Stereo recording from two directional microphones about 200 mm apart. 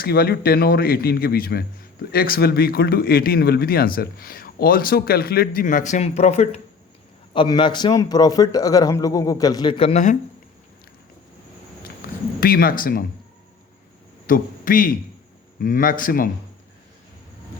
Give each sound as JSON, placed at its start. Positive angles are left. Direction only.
{"t": 0.0, "sound": "a man's voice", "side_deg": 50}
{"t": 12.0, "sound": "a sound", "side_deg": 50}
{"t": 12.4, "sound": "speech", "side_deg": 45}
{"t": 14.3, "sound": "speech", "side_deg": 45}